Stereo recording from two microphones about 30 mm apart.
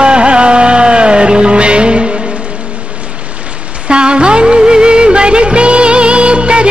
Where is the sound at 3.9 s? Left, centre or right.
Right.